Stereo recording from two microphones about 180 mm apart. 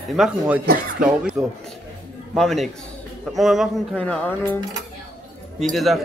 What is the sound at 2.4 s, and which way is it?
A man's voice, centre (ahead or behind).